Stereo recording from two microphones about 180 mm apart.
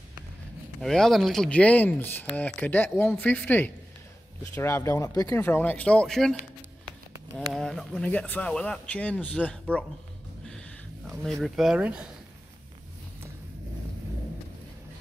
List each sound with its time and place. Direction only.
0.7 s speech: centre (ahead or behind)
7.3 s speech: centre (ahead or behind)
11.1 s speech: centre (ahead or behind)